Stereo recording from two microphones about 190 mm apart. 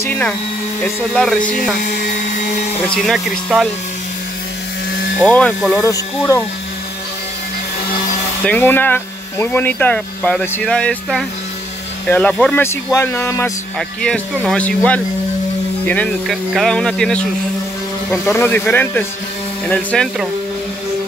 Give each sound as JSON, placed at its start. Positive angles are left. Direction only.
{"t": 1.1, "sound": "speech", "side_deg": 5}
{"t": 1.4, "sound": "speech", "side_deg": 45}
{"t": 3.0, "sound": "speech", "side_deg": 0}
{"t": 5.2, "sound": "speech", "side_deg": 5}
{"t": 5.8, "sound": "speech", "side_deg": 15}
{"t": 8.5, "sound": "speech", "side_deg": 10}
{"t": 18.1, "sound": "speech", "side_deg": 15}